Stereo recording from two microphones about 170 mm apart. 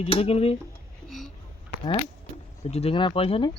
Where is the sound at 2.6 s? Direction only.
40° left (ahead or behind).